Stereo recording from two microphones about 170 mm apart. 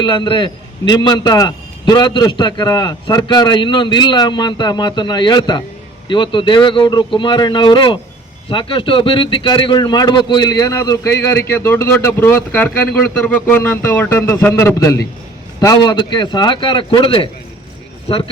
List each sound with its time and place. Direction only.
0.0 s a man's voice: 25° left (ahead or behind)